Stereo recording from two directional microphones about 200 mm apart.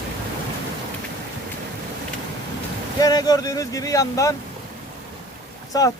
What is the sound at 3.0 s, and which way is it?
Speech, 20° left (ahead or behind).